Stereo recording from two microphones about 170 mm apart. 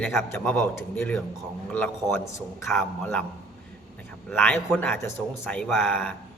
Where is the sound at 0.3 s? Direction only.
10° left (ahead or behind).